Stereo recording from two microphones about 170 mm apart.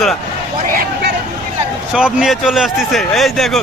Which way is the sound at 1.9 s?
5° right (ahead or behind).